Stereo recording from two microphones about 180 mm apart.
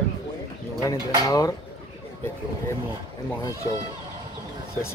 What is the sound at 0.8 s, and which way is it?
Speech, 20° left (ahead or behind).